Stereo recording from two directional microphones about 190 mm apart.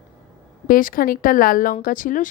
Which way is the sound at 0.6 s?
50° left (ahead or behind).